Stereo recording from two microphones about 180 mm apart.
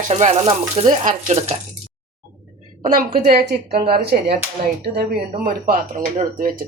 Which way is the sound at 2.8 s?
55° right (ahead or behind).